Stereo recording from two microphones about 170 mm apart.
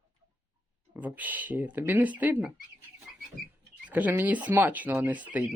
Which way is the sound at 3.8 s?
10° right (ahead or behind).